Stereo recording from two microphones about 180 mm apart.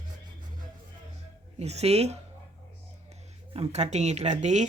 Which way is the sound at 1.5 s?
35° right (ahead or behind).